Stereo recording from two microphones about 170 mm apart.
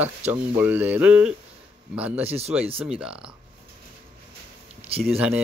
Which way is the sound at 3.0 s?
5° right (ahead or behind).